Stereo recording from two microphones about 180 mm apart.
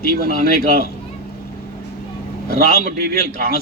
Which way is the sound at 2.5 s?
55° left (ahead or behind).